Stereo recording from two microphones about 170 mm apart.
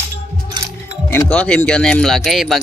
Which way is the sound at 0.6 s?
25° right (ahead or behind).